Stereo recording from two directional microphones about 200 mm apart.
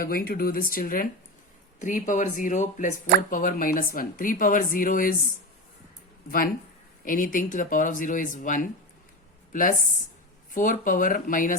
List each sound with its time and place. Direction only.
0.0 s speech: 45° left (ahead or behind)
7.0 s speech: 45° left (ahead or behind)